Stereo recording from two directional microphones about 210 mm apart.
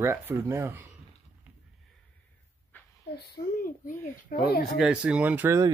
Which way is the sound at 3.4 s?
45° left (ahead or behind).